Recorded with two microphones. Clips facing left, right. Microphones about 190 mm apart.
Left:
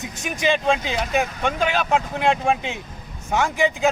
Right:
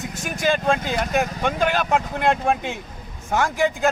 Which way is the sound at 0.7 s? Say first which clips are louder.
Right 1 dB; 55° right (ahead or behind).